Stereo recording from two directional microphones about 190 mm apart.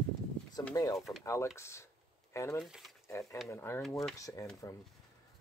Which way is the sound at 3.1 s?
15° left (ahead or behind).